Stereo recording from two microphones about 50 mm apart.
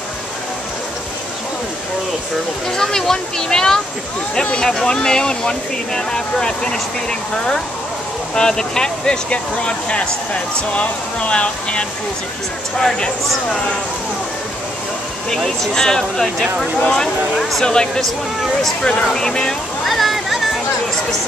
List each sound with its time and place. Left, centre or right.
2.7 s speech: centre
12.7 s speech: centre
15.2 s speech: centre
19.9 s a sound: centre